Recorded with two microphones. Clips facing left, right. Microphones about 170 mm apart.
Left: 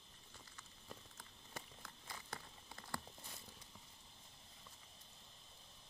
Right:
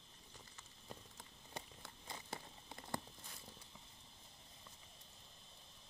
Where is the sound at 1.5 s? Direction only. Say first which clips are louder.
Right 2 dB; 25° right (ahead or behind).